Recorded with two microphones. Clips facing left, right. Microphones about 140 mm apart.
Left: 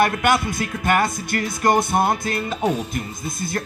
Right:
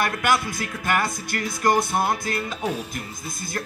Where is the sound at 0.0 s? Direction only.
20° left (ahead or behind).